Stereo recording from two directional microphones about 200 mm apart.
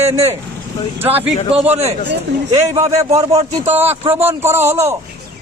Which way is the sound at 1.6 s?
30° right (ahead or behind).